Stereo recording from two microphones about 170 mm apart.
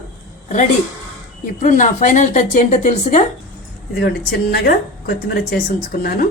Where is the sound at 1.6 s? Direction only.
45° left (ahead or behind).